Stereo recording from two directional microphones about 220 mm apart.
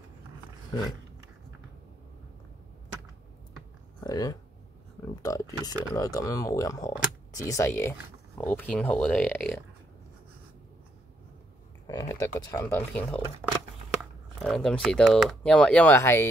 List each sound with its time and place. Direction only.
4.0 s speech: 15° left (ahead or behind)
11.9 s speech: 15° left (ahead or behind)
14.4 s speech: centre (ahead or behind)